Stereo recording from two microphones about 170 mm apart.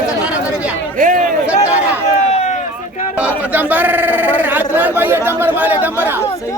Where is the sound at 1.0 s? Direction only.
50° right (ahead or behind).